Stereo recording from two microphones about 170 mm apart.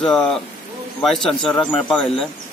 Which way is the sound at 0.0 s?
5° left (ahead or behind).